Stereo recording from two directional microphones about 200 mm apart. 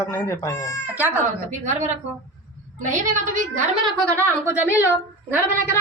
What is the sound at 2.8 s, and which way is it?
Speech, 40° right (ahead or behind).